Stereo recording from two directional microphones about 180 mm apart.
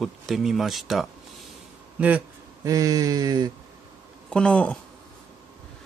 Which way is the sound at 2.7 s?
20° right (ahead or behind).